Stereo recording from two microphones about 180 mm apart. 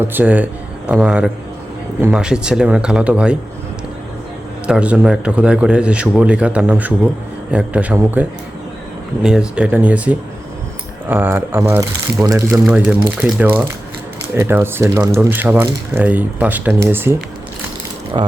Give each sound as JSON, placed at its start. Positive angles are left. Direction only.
{"t": 0.0, "sound": "a man's voice", "side_deg": -10}
{"t": 4.6, "sound": "a man's voice", "side_deg": -5}
{"t": 12.5, "sound": "a man's voice", "side_deg": -5}
{"t": 18.2, "sound": "speech", "side_deg": -25}